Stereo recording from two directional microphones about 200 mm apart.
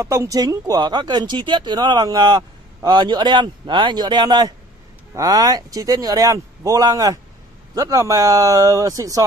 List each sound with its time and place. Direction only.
0.0 s speech: 15° right (ahead or behind)